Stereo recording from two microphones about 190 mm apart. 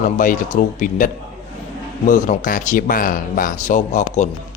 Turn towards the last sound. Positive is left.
turn(degrees=40)  # may be behind; listen again after turning